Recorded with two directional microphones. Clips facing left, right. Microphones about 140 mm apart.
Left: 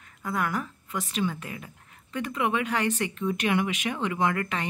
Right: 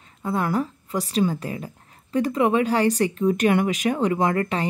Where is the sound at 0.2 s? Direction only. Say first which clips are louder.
Right 6 dB; 30° right (ahead or behind).